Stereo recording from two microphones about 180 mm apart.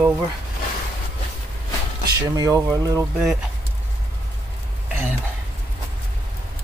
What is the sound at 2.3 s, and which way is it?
Speech, 20° right (ahead or behind).